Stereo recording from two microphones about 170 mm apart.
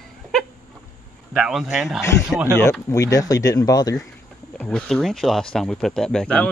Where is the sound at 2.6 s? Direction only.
15° left (ahead or behind).